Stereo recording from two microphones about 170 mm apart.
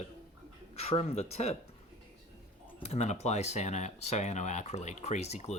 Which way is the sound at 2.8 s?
40° left (ahead or behind).